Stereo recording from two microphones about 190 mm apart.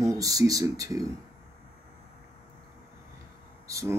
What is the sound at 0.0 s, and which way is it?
Speech, 15° right (ahead or behind).